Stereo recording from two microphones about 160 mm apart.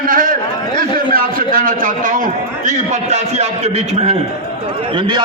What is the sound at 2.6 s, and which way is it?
A man's voice, 45° right (ahead or behind).